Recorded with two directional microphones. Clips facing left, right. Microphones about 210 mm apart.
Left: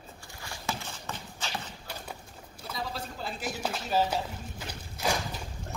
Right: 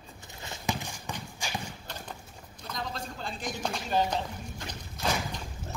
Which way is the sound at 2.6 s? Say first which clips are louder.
Even; 5° left (ahead or behind).